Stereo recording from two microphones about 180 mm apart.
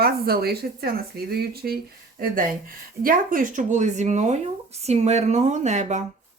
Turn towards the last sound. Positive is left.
turn(degrees=-40)  # may be behind; listen again after turning